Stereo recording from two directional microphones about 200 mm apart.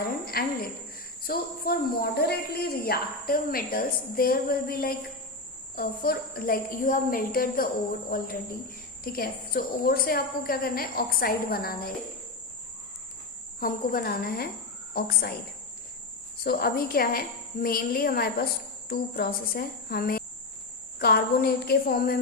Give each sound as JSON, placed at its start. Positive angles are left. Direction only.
{"t": 0.3, "sound": "a woman's voice", "side_deg": 50}
{"t": 13.6, "sound": "speech", "side_deg": 45}
{"t": 16.4, "sound": "speech", "side_deg": 50}